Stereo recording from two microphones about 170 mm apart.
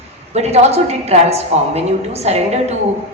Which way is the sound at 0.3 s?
40° right (ahead or behind).